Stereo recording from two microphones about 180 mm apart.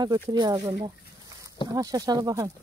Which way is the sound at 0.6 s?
15° right (ahead or behind).